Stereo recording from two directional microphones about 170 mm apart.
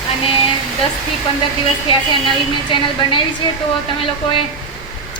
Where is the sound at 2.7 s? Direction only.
30° left (ahead or behind).